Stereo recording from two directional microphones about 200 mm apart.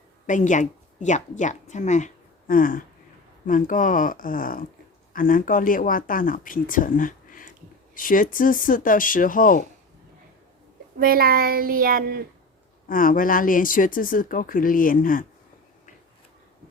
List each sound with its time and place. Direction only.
0.3 s a woman's voice: 40° left (ahead or behind)
11.0 s speech: 50° right (ahead or behind)
12.9 s speech: 45° left (ahead or behind)